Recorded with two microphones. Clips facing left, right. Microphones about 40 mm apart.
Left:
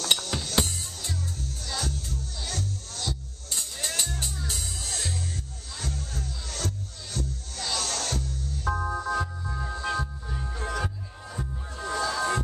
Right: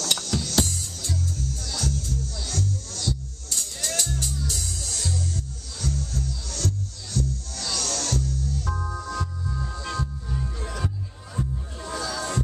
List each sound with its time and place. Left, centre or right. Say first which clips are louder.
0.0 s music: even; left